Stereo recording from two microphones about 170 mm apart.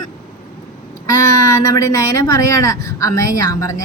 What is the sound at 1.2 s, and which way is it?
A woman's voice, 20° left (ahead or behind).